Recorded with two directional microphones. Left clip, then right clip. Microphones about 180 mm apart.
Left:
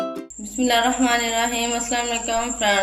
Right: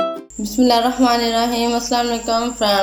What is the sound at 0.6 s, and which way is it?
Speech, 25° right (ahead or behind).